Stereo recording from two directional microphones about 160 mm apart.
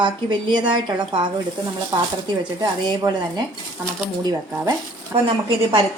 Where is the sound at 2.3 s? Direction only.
30° right (ahead or behind).